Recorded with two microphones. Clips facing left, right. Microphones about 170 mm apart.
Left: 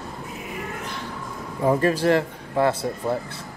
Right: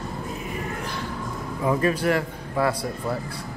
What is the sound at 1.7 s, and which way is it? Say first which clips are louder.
Speech: left 3 dB; 30° left (ahead or behind).